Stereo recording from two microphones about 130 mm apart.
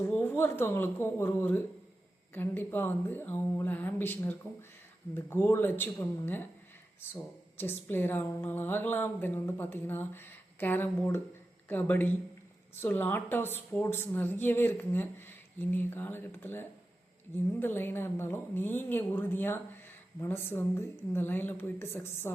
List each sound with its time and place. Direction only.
0.0 s speech: 15° left (ahead or behind)